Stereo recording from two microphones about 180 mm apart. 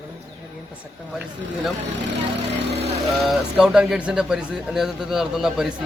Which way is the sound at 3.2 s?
Centre (ahead or behind).